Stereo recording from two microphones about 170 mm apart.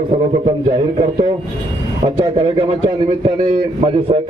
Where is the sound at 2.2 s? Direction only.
30° right (ahead or behind).